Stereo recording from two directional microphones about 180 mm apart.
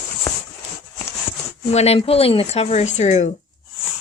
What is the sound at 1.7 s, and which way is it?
A woman's voice, 35° left (ahead or behind).